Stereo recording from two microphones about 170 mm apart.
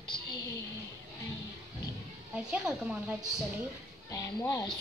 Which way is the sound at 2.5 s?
5° right (ahead or behind).